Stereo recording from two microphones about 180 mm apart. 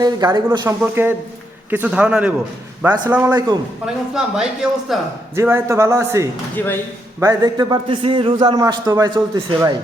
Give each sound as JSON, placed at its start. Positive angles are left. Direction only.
{"t": 0.0, "sound": "a man's voice", "side_deg": -25}
{"t": 0.8, "sound": "a man's voice", "side_deg": -10}
{"t": 3.8, "sound": "speech", "side_deg": -5}
{"t": 5.3, "sound": "a man's voice", "side_deg": -15}
{"t": 6.6, "sound": "speech", "side_deg": 10}
{"t": 7.2, "sound": "a man's voice", "side_deg": -20}